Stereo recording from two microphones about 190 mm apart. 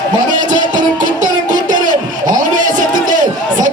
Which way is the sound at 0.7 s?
40° right (ahead or behind).